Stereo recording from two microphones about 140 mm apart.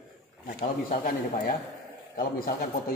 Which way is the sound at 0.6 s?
90° left.